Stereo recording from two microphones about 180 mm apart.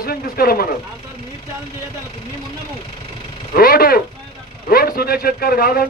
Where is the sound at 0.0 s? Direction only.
55° left (ahead or behind).